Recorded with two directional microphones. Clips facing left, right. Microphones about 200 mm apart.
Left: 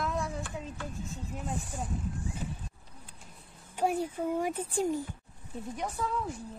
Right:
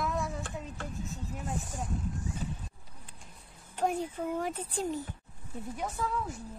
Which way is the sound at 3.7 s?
10° left (ahead or behind).